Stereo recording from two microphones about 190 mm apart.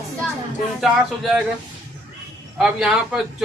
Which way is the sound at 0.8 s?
Centre (ahead or behind).